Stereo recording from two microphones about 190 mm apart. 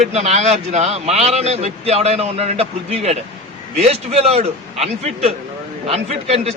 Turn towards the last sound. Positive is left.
turn(degrees=-35)  # may be behind; listen again after turning